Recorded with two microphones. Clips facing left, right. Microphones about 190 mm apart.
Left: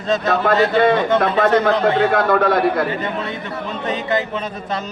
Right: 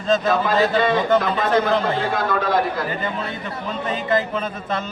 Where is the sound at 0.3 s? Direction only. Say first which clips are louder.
Left 2 dB; 60° left (ahead or behind).